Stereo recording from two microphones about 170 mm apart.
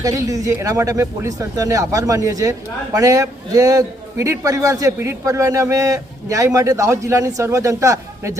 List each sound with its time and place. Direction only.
0.0 s a man's voice: 20° right (ahead or behind)